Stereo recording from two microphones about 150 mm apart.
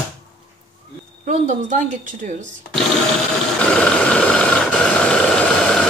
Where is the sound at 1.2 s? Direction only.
55° right (ahead or behind).